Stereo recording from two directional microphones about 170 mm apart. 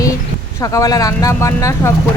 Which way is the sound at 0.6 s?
20° left (ahead or behind).